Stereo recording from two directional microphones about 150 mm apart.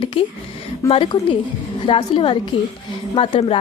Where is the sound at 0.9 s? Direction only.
40° left (ahead or behind).